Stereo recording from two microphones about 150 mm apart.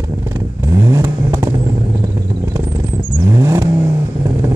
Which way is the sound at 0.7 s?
20° right (ahead or behind).